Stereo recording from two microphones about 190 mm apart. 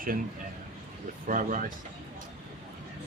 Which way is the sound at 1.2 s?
45° right (ahead or behind).